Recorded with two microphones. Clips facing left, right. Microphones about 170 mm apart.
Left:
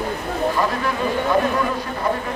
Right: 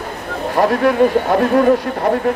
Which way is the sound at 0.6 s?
65° right (ahead or behind).